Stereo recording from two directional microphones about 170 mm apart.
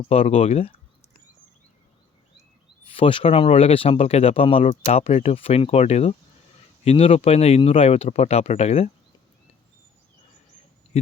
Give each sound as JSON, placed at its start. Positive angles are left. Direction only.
{"t": 0.0, "sound": "speech", "side_deg": 40}
{"t": 2.8, "sound": "speech", "side_deg": 30}
{"t": 10.9, "sound": "speech", "side_deg": 35}